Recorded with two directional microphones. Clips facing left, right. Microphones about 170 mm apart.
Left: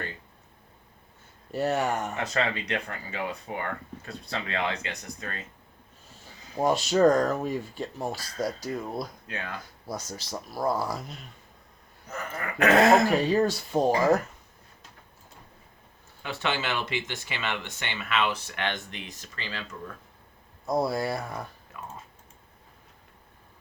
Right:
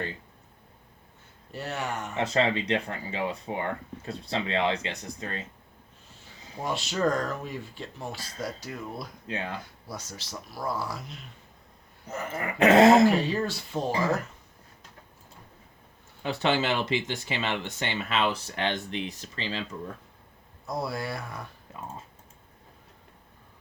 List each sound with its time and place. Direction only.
1.5 s speech: 45° left (ahead or behind)
2.1 s speech: 25° right (ahead or behind)
6.6 s speech: 40° left (ahead or behind)
9.2 s speech: 25° right (ahead or behind)
9.8 s speech: 40° left (ahead or behind)
12.0 s speech: 25° right (ahead or behind)
13.1 s speech: 45° left (ahead or behind)
16.2 s speech: 35° right (ahead or behind)
20.7 s speech: 40° left (ahead or behind)